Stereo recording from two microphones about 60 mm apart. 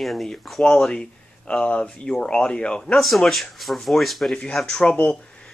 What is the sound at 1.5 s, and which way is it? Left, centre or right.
Speech, centre.